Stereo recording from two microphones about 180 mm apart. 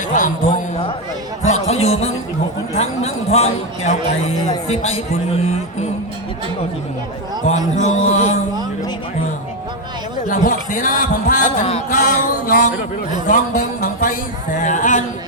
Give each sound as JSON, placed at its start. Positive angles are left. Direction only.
{"t": 0.1, "sound": "a man's voice", "side_deg": 45}
{"t": 7.5, "sound": "a man's voice", "side_deg": 40}
{"t": 10.2, "sound": "speech", "side_deg": 45}
{"t": 13.8, "sound": "speech", "side_deg": 50}